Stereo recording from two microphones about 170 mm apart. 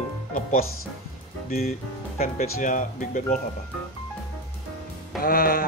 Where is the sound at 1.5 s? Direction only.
40° left (ahead or behind).